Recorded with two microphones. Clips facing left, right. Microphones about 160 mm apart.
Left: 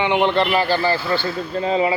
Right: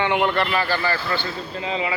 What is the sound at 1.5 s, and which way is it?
Speech, 40° left (ahead or behind).